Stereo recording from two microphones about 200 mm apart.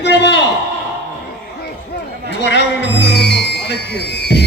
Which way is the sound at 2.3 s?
60° left (ahead or behind).